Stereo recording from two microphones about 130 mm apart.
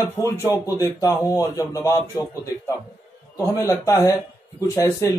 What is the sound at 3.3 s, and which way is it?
Speech, 25° left (ahead or behind).